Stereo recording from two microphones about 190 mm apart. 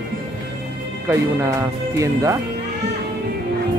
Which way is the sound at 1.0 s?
15° right (ahead or behind).